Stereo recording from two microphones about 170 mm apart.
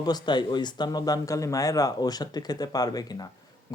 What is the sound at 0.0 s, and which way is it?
Speech, 25° left (ahead or behind).